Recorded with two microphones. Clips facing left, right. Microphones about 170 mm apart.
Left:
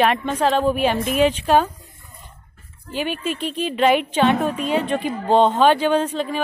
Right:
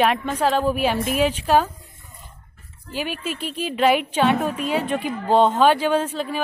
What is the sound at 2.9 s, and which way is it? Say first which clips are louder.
A woman's voice: left 3 dB; 5° right (ahead or behind).